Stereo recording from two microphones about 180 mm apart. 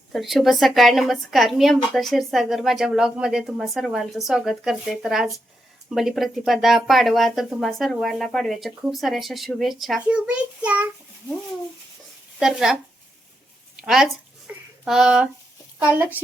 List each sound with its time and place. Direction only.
0.1 s a woman's voice: centre (ahead or behind)
12.4 s a woman's voice: 5° right (ahead or behind)
13.7 s a sound: centre (ahead or behind)
15.8 s speech: 10° right (ahead or behind)